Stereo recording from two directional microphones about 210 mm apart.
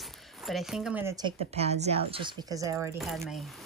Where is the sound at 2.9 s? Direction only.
Centre (ahead or behind).